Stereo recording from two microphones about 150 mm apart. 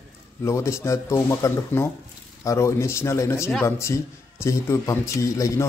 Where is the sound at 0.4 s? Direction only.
20° left (ahead or behind).